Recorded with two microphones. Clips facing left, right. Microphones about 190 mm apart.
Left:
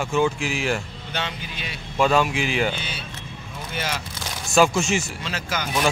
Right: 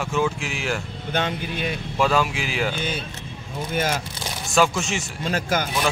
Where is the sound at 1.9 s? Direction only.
Centre (ahead or behind).